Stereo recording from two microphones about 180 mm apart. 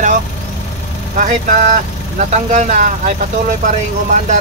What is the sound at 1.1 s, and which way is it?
Speech, 45° right (ahead or behind).